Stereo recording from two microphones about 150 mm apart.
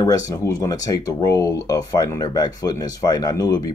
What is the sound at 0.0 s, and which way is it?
Speech, 20° left (ahead or behind).